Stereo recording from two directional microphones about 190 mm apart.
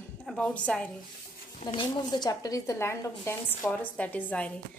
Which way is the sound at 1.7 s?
20° left (ahead or behind).